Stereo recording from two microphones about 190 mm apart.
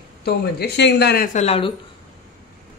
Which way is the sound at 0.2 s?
55° left (ahead or behind).